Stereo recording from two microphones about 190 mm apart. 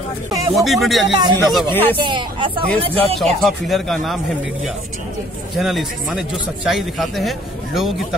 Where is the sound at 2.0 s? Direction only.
25° right (ahead or behind).